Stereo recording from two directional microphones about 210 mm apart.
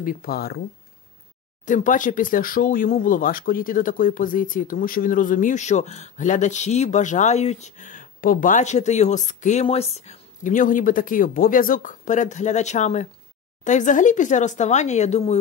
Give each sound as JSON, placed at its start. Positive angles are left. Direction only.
{"t": 0.0, "sound": "speech", "side_deg": 45}
{"t": 1.7, "sound": "speech", "side_deg": 40}